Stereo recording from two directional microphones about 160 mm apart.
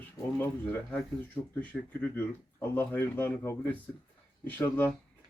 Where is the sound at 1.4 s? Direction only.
25° left (ahead or behind).